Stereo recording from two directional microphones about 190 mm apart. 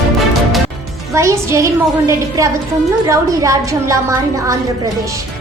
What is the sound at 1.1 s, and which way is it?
A woman's voice, 15° right (ahead or behind).